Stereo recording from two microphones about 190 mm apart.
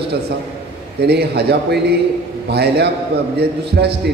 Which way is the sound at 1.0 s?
60° right (ahead or behind).